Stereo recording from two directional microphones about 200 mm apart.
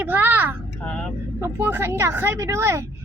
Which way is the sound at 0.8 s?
5° left (ahead or behind).